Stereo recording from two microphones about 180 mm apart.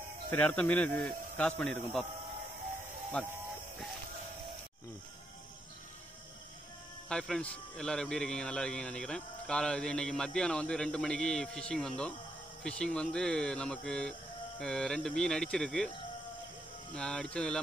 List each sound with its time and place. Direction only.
0.3 s a man's voice: 10° left (ahead or behind)
7.1 s a man's voice: 5° left (ahead or behind)
16.9 s a man's voice: 5° left (ahead or behind)